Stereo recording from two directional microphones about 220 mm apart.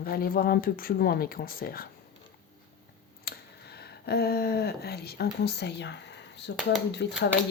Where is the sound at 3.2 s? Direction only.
45° left (ahead or behind).